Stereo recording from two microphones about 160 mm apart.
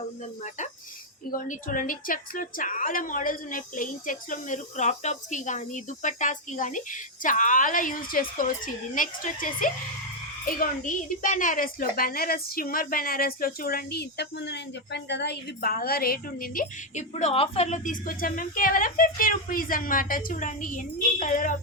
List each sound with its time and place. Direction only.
1.3 s a woman's voice: 55° left (ahead or behind)